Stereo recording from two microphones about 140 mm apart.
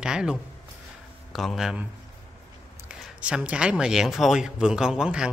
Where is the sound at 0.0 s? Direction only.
5° right (ahead or behind).